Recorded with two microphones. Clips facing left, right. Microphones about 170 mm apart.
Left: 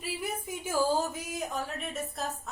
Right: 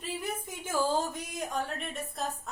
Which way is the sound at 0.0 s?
10° left (ahead or behind).